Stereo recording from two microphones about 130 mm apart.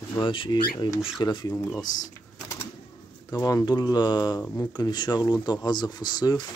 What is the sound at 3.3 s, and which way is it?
Speech, 25° left (ahead or behind).